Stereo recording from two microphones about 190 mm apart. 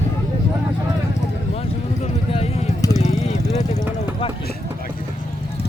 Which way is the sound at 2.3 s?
35° left (ahead or behind).